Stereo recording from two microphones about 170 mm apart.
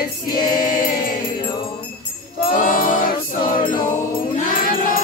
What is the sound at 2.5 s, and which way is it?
Music, 55° left (ahead or behind).